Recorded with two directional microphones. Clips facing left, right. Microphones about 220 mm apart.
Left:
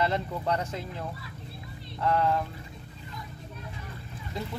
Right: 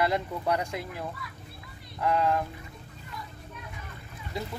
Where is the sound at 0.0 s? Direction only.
10° right (ahead or behind).